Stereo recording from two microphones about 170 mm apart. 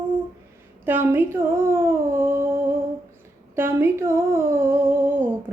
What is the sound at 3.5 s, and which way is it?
Humming, 15° right (ahead or behind).